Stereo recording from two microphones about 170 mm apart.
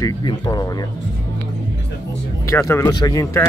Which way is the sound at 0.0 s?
25° left (ahead or behind).